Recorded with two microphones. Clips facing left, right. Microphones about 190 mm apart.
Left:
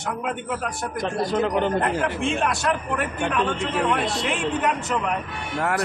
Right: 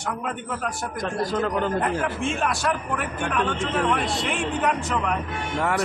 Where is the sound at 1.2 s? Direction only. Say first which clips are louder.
Left 2 dB; 20° left (ahead or behind).